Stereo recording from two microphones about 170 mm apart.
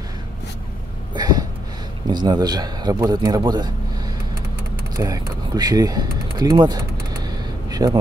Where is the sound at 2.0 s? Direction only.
25° right (ahead or behind).